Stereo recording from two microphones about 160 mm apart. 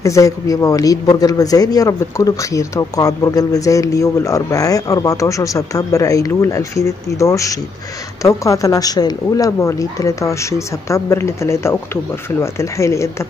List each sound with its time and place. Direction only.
0.0 s speech: 20° left (ahead or behind)